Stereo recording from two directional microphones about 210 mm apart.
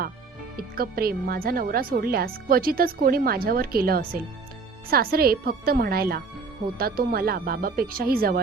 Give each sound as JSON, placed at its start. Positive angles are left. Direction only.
{"t": 0.5, "sound": "speech", "side_deg": -45}